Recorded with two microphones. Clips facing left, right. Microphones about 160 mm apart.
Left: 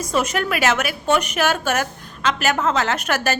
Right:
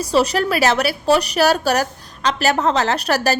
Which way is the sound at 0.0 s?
35° right (ahead or behind).